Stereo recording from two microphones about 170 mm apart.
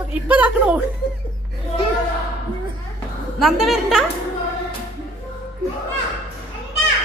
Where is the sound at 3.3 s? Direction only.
Centre (ahead or behind).